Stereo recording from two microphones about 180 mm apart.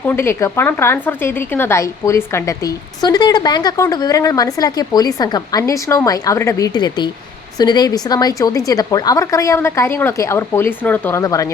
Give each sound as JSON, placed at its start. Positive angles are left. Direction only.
{"t": 0.1, "sound": "a woman's voice", "side_deg": 15}